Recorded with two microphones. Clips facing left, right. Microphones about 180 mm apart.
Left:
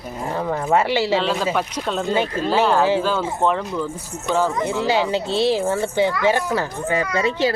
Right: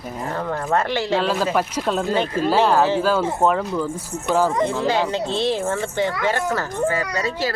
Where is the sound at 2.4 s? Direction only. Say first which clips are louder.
Right 2 dB; 10° right (ahead or behind).